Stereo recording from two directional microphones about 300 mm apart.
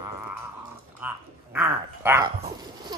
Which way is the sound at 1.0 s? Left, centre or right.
Centre.